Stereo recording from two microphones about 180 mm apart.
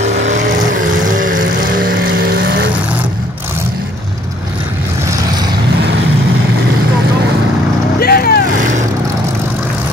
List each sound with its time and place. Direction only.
0.0 s vehicle: 40° right (ahead or behind); by 2.6 s 60° right (ahead or behind)
8.0 s vehicle: 60° left (ahead or behind)